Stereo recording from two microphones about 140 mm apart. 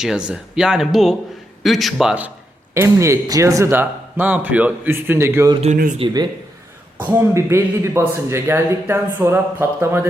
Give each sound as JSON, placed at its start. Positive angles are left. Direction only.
{"t": 0.3, "sound": "speech", "side_deg": -5}
{"t": 2.7, "sound": "speech", "side_deg": -20}
{"t": 6.0, "sound": "speech", "side_deg": -40}
{"t": 7.0, "sound": "speech", "side_deg": -20}